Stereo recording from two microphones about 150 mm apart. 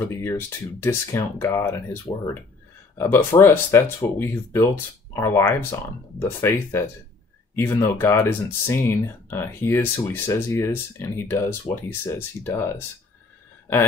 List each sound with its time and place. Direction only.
0.0 s speech: 15° left (ahead or behind)
3.0 s speech: 15° left (ahead or behind)